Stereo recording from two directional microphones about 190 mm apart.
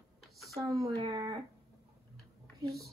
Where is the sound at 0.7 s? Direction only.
15° right (ahead or behind).